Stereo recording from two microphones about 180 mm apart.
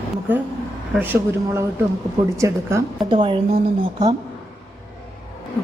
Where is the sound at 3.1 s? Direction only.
30° right (ahead or behind).